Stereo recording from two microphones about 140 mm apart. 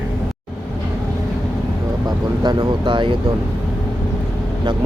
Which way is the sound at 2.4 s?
30° right (ahead or behind).